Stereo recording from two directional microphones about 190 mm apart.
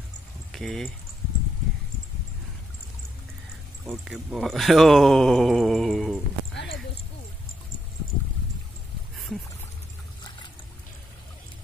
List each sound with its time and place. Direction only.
0.5 s speech: centre (ahead or behind)
3.8 s speech: centre (ahead or behind)
6.5 s clip-clop: 65° left (ahead or behind)